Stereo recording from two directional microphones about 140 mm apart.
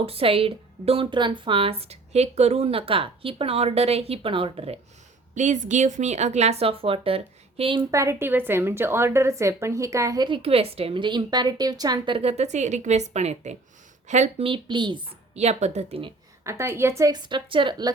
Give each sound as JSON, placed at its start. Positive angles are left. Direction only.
{"t": 0.0, "sound": "a woman's voice", "side_deg": -45}
{"t": 5.3, "sound": "a woman's voice", "side_deg": -60}
{"t": 7.9, "sound": "a woman's voice", "side_deg": -20}
{"t": 14.4, "sound": "speech", "side_deg": -35}
{"t": 15.4, "sound": "a woman's voice", "side_deg": -50}
{"t": 16.4, "sound": "a woman's voice", "side_deg": -20}
{"t": 17.2, "sound": "speech", "side_deg": -35}